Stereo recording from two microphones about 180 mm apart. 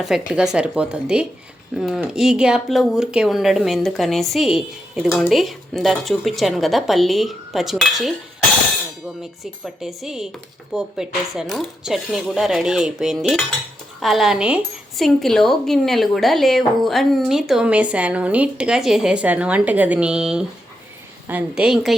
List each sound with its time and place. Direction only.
0.0 s a woman's voice: 5° right (ahead or behind)
9.4 s a woman's voice: centre (ahead or behind)